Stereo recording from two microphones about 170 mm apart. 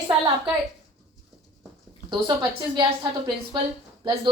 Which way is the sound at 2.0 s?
30° right (ahead or behind).